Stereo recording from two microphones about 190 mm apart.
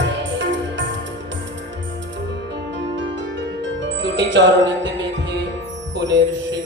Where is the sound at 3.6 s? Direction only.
70° right (ahead or behind).